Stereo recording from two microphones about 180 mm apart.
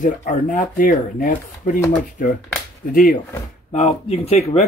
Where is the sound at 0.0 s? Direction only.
40° left (ahead or behind).